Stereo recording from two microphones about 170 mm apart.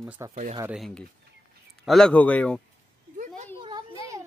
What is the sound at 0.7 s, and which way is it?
Speech, centre (ahead or behind).